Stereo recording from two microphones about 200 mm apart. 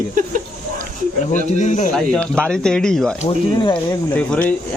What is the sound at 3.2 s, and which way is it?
Speech, 25° left (ahead or behind).